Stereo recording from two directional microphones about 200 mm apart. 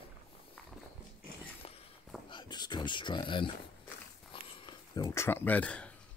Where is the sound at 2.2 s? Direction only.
25° left (ahead or behind); by 5.9 s 5° left (ahead or behind).